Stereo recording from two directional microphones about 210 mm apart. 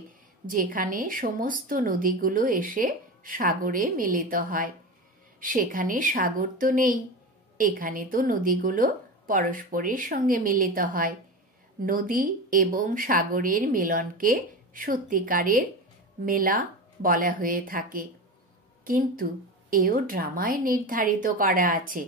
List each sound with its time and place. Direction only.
0.5 s a woman's voice: 40° right (ahead or behind)